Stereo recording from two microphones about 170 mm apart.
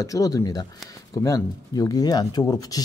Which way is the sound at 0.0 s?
20° left (ahead or behind).